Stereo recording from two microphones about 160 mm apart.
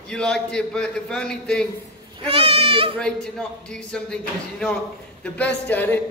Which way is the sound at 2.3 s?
40° right (ahead or behind).